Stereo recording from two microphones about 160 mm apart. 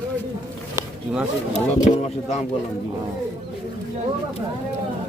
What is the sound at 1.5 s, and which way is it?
Speech, 45° left (ahead or behind).